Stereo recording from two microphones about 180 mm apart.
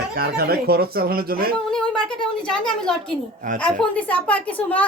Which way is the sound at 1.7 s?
5° left (ahead or behind).